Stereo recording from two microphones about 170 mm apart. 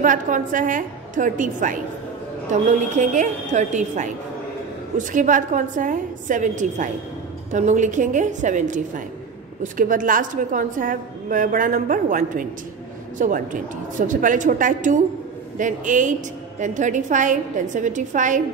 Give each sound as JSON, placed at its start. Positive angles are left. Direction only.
{"t": 0.0, "sound": "a woman's voice", "side_deg": -50}